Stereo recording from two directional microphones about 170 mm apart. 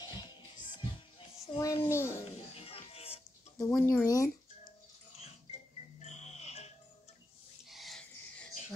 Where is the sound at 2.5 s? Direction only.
35° left (ahead or behind).